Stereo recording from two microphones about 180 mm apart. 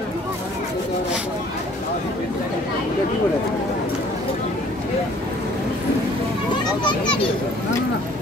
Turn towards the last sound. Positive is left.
turn(degrees=25)  # may be behind; listen again after turning